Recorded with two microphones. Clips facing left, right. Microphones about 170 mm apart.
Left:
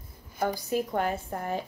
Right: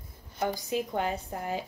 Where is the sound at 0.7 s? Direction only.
45° left (ahead or behind).